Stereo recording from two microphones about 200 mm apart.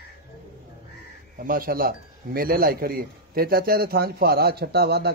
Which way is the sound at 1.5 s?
45° right (ahead or behind).